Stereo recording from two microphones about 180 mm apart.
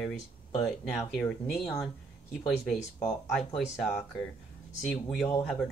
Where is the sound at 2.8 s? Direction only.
35° left (ahead or behind).